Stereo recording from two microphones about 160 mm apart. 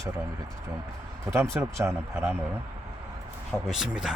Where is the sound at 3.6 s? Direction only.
Centre (ahead or behind).